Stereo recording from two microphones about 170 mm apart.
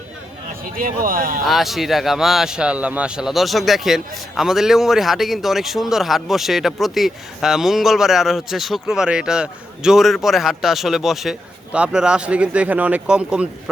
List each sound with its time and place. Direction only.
0.8 s speech: 55° right (ahead or behind)
1.5 s speech: centre (ahead or behind)